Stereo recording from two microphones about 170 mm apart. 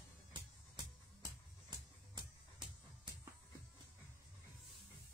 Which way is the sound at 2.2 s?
25° right (ahead or behind).